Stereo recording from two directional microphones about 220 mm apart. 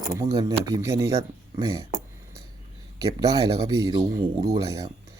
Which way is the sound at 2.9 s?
15° right (ahead or behind).